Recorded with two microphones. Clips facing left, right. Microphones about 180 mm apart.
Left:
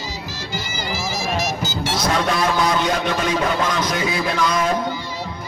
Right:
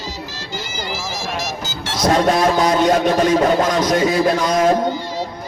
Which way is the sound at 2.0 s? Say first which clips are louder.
Right 7 dB; 40° right (ahead or behind).